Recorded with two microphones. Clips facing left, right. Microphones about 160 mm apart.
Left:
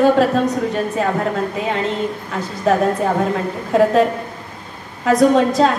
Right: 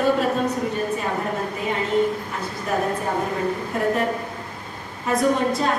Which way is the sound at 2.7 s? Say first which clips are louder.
Left 8 dB; 90° left.